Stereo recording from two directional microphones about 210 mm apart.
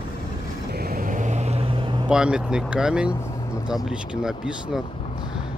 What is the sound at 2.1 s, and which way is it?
Speech, 5° right (ahead or behind).